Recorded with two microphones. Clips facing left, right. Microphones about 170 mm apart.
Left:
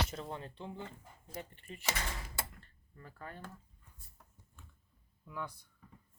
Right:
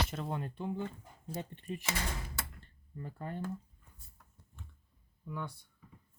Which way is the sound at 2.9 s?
20° right (ahead or behind).